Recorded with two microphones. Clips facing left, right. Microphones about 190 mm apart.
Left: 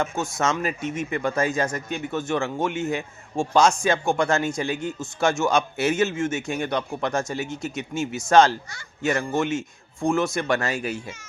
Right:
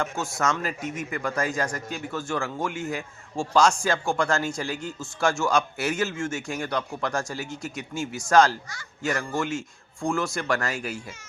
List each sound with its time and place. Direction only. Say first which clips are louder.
0.0 s a man's voice: left 2 dB; 20° left (ahead or behind)